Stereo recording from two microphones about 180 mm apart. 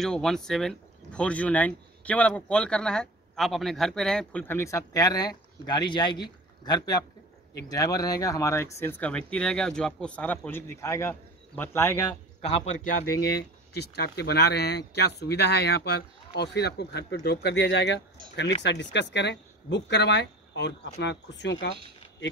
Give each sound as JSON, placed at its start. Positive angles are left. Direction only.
{"t": 0.0, "sound": "a man's voice", "side_deg": 5}
{"t": 12.4, "sound": "a man's voice", "side_deg": 35}
{"t": 13.2, "sound": "speech", "side_deg": 65}